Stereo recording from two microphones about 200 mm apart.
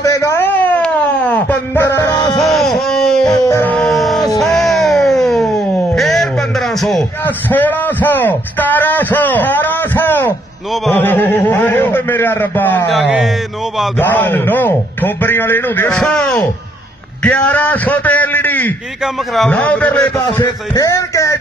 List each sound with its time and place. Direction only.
0.0 s a sound: 15° left (ahead or behind)
2.3 s a sound: centre (ahead or behind)
3.4 s music: 10° left (ahead or behind)
5.9 s a man's voice: centre (ahead or behind)
12.9 s speech: centre (ahead or behind)
13.9 s a man's voice: 10° left (ahead or behind)